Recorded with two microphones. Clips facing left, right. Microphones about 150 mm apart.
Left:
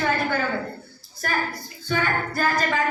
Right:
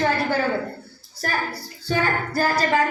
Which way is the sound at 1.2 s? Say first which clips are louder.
Even; 35° right (ahead or behind).